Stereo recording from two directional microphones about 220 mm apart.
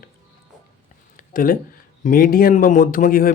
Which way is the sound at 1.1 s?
40° left (ahead or behind).